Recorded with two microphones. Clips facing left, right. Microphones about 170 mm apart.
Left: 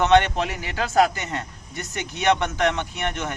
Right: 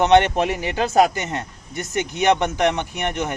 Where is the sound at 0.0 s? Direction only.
20° right (ahead or behind).